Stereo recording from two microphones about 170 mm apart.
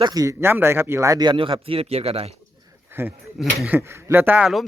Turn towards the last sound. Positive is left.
turn(degrees=0)  # may be behind; listen again after turning